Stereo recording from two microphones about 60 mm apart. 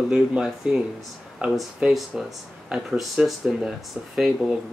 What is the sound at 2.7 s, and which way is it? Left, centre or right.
Speech, centre.